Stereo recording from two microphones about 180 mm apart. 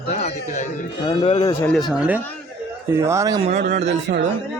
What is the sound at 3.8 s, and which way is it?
Speech, 75° right (ahead or behind).